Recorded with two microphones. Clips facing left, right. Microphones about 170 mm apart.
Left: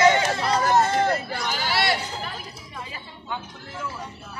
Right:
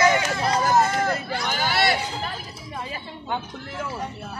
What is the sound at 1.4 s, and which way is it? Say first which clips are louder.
Speech: right 3 dB; 50° right (ahead or behind).